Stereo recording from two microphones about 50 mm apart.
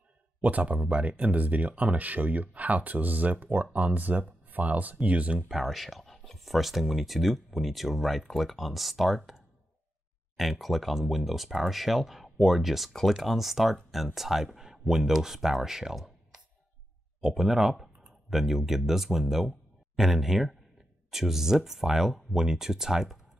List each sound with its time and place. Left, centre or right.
0.4 s speech: right
5.5 s speech: centre
17.2 s speech: centre